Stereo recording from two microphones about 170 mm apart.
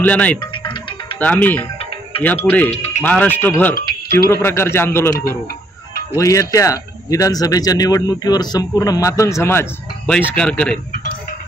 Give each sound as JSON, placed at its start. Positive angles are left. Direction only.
{"t": 0.0, "sound": "speech", "side_deg": 10}
{"t": 0.4, "sound": "music", "side_deg": 30}
{"t": 1.2, "sound": "speech", "side_deg": 10}
{"t": 2.7, "sound": "speech", "side_deg": 40}
{"t": 3.0, "sound": "speech", "side_deg": 10}
{"t": 3.7, "sound": "music", "side_deg": 60}
{"t": 4.4, "sound": "speech", "side_deg": 15}